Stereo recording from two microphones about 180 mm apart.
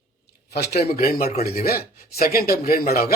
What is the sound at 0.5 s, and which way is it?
Speech, 60° left (ahead or behind).